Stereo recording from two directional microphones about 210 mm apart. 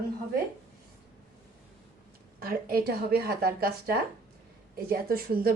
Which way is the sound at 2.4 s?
45° right (ahead or behind).